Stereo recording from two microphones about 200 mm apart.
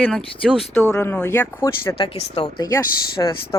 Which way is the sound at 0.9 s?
10° left (ahead or behind).